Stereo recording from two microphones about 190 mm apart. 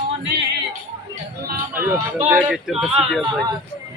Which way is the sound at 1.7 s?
10° right (ahead or behind).